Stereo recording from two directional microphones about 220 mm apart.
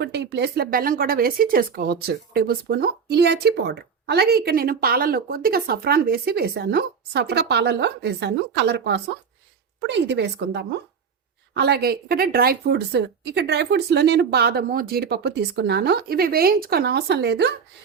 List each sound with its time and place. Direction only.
0.0 s speech: 50° right (ahead or behind)